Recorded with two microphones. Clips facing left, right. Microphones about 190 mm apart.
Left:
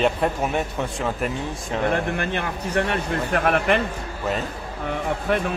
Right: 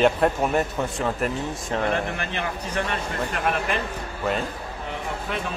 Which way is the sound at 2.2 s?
55° left (ahead or behind).